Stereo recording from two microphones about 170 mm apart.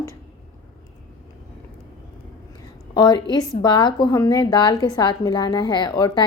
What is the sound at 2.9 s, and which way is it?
A woman's voice, 25° left (ahead or behind).